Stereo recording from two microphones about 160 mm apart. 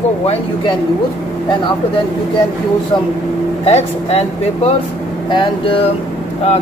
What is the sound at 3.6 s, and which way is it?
Speech, 40° left (ahead or behind).